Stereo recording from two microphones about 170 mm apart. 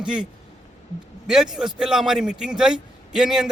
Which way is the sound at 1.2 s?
5° right (ahead or behind).